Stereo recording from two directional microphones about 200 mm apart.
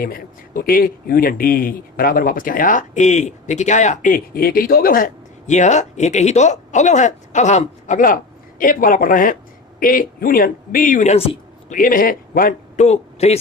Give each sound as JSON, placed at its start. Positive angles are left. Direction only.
{"t": 0.0, "sound": "a man's voice", "side_deg": 45}
{"t": 11.8, "sound": "speech", "side_deg": 45}